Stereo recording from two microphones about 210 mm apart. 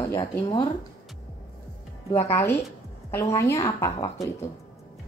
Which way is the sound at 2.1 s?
10° left (ahead or behind).